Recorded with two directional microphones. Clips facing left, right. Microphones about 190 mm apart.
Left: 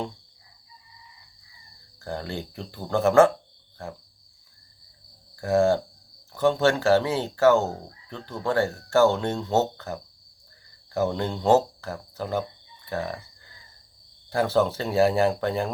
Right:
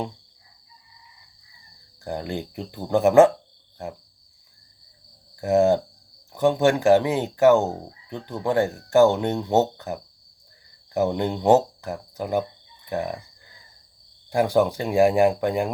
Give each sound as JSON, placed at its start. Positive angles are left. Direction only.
{"t": 2.0, "sound": "speech", "side_deg": -15}
{"t": 3.8, "sound": "cricket", "side_deg": -20}
{"t": 5.4, "sound": "speech", "side_deg": -20}
{"t": 14.3, "sound": "speech", "side_deg": -15}